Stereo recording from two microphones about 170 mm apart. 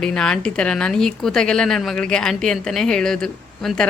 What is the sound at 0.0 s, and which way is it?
A woman's voice, 5° left (ahead or behind).